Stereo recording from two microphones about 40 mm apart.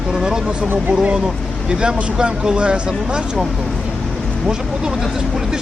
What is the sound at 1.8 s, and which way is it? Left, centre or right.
Speech, right.